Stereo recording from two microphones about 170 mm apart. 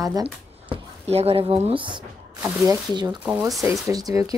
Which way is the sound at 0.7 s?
35° right (ahead or behind).